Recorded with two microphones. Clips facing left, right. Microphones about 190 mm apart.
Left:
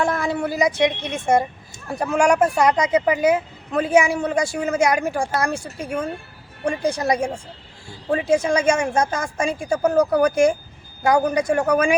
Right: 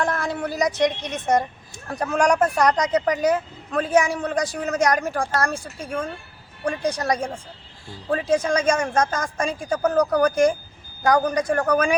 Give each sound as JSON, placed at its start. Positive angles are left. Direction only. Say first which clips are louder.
{"t": 0.0, "sound": "a woman's voice", "louder": "left 3 dB", "side_deg": 10}